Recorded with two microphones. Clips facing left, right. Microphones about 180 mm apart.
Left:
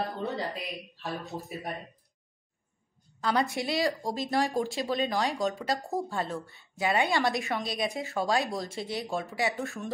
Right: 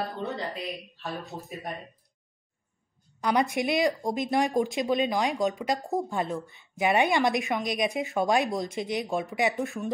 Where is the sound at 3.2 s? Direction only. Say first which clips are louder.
Right 3 dB; 15° right (ahead or behind).